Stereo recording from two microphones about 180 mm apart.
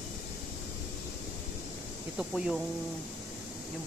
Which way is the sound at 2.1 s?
Centre (ahead or behind).